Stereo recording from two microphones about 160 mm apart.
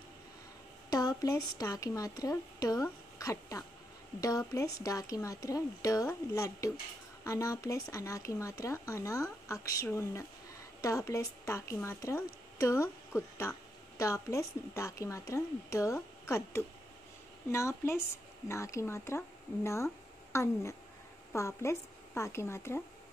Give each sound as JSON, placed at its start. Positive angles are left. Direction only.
{"t": 0.8, "sound": "a woman's voice", "side_deg": 20}